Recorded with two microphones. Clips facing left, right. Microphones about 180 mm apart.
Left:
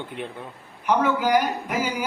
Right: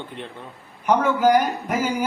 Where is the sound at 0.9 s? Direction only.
45° right (ahead or behind).